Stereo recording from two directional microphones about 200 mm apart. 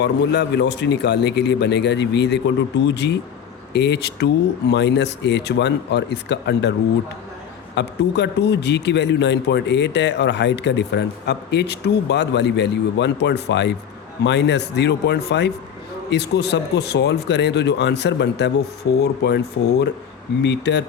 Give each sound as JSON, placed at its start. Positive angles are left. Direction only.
{"t": 0.0, "sound": "a man's voice", "side_deg": 60}
{"t": 7.8, "sound": "a man's voice", "side_deg": 60}